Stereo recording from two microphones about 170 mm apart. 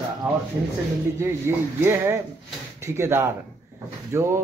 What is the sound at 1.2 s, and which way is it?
Speech, 15° right (ahead or behind).